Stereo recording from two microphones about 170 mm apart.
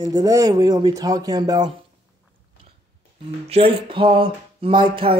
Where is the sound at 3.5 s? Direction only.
35° right (ahead or behind).